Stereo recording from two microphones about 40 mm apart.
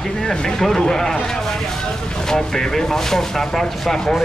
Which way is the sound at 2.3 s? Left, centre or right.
Centre.